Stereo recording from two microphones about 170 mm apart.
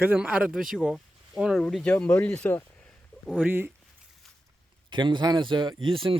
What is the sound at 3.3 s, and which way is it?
Speech, 10° right (ahead or behind).